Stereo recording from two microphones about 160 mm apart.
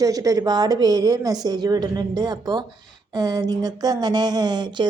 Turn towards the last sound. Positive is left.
turn(degrees=-30)  # may be behind; listen again after turning